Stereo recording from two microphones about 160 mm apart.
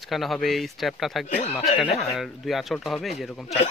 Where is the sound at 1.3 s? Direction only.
45° left (ahead or behind).